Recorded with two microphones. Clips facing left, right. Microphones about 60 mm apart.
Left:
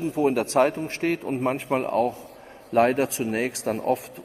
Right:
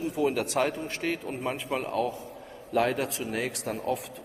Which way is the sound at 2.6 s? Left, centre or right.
Left.